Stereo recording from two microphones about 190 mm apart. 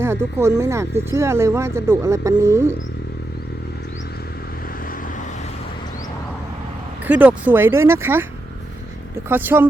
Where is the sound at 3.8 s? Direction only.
65° left (ahead or behind); by 5.5 s 40° left (ahead or behind).